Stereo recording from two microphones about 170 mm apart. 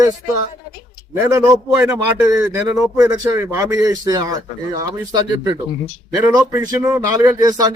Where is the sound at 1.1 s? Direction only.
15° right (ahead or behind).